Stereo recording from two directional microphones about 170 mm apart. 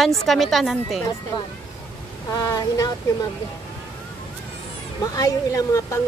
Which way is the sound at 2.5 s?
20° left (ahead or behind).